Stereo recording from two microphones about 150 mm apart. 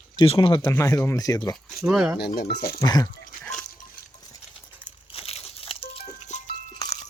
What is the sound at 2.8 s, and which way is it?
Speech, 25° left (ahead or behind).